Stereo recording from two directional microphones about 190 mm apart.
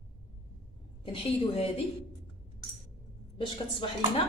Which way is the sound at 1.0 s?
30° left (ahead or behind).